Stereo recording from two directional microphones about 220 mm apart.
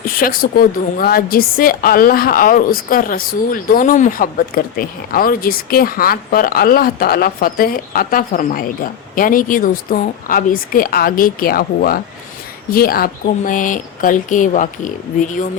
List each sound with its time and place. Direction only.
0.0 s a woman's voice: 40° left (ahead or behind)